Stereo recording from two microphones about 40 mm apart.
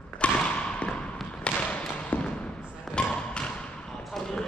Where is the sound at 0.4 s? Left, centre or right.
Left.